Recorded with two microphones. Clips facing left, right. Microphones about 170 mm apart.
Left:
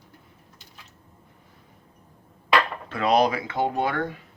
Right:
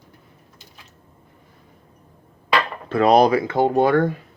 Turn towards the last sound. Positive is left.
turn(degrees=-35)  # may be behind; listen again after turning